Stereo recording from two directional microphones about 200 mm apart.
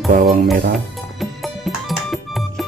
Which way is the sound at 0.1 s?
40° right (ahead or behind).